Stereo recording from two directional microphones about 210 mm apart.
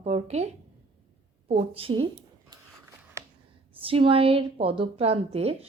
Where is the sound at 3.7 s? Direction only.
25° right (ahead or behind).